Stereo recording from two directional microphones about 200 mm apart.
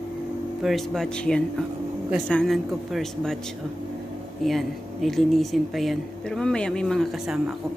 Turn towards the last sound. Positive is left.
turn(degrees=-5)  # may be behind; listen again after turning